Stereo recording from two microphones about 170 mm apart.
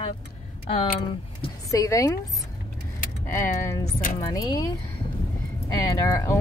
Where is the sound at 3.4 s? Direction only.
15° left (ahead or behind).